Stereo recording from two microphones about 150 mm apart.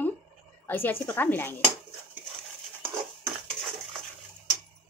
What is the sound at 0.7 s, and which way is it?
Speech, 15° left (ahead or behind).